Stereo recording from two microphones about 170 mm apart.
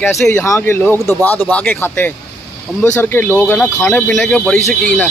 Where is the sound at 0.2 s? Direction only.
10° left (ahead or behind).